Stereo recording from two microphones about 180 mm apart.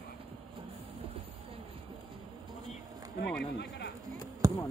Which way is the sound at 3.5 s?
70° left (ahead or behind).